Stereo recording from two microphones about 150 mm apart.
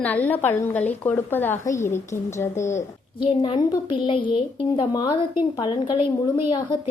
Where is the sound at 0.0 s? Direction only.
10° left (ahead or behind).